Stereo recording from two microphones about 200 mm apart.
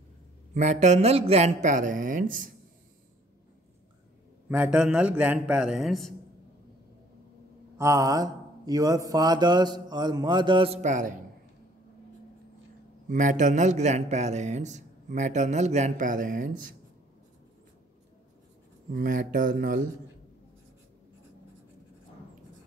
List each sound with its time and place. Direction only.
0.6 s a man's voice: 35° right (ahead or behind)
4.5 s a man's voice: 5° right (ahead or behind)
7.7 s speech: 15° right (ahead or behind); by 11.1 s 40° right (ahead or behind)
13.1 s a man's voice: 40° right (ahead or behind)
18.9 s speech: 40° right (ahead or behind)